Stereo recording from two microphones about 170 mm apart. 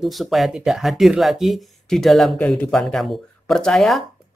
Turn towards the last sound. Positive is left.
turn(degrees=0)  # may be behind; listen again after turning